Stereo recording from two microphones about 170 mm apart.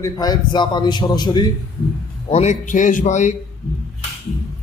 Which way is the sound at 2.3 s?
40° left (ahead or behind).